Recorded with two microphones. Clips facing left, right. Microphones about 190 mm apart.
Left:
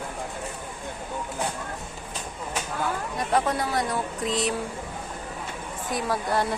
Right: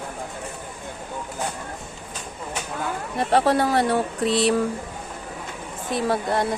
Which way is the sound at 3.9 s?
70° right (ahead or behind).